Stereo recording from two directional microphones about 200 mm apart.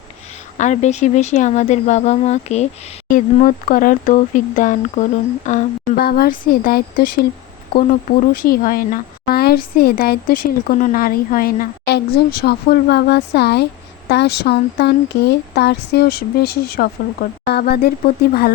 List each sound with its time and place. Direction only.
0.5 s speech: 35° left (ahead or behind)
6.0 s speech: 50° left (ahead or behind)
8.3 s speech: 45° left (ahead or behind)